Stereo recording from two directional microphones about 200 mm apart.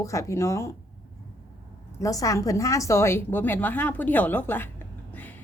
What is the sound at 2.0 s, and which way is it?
A woman's voice, 15° left (ahead or behind).